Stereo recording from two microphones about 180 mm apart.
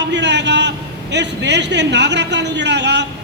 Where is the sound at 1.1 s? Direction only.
75° right (ahead or behind).